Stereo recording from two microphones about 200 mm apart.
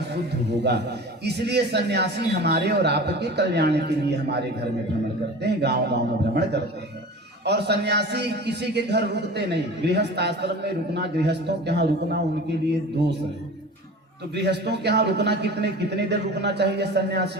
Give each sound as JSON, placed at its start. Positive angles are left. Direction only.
{"t": 0.6, "sound": "a man's voice", "side_deg": -55}
{"t": 14.3, "sound": "a man's voice", "side_deg": -55}